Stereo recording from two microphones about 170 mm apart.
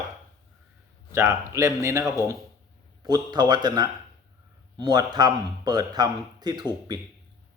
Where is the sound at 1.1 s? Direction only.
15° right (ahead or behind).